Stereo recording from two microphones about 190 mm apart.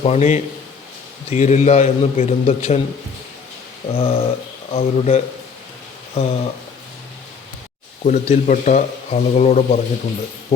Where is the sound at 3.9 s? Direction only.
30° left (ahead or behind).